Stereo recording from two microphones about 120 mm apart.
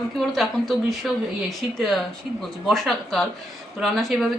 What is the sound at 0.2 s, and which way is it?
Speech, centre (ahead or behind).